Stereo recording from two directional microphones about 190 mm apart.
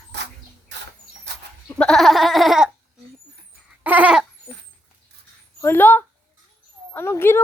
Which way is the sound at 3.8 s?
10° right (ahead or behind).